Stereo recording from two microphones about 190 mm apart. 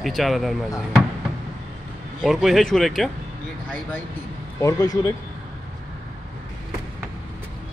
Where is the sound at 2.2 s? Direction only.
Centre (ahead or behind).